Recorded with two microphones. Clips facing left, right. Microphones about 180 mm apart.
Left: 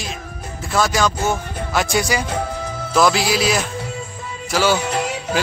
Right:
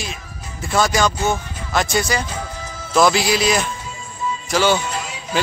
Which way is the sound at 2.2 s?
60° left (ahead or behind).